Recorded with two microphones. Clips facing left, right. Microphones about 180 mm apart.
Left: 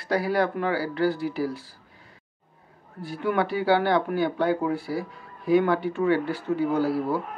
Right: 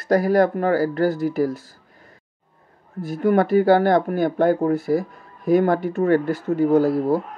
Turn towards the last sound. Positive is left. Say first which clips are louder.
# right 7 dB
turn(degrees=-45)  # may be behind; listen again after turning